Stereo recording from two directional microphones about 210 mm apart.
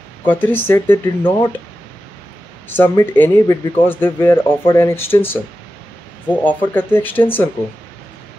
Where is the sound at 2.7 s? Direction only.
10° left (ahead or behind).